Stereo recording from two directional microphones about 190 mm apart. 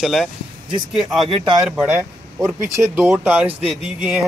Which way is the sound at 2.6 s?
15° right (ahead or behind).